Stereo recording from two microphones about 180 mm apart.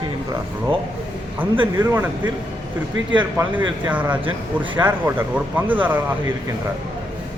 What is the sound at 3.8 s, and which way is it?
Speech, 10° right (ahead or behind).